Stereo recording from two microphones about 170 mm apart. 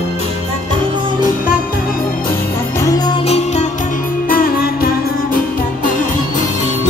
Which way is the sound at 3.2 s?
40° left (ahead or behind).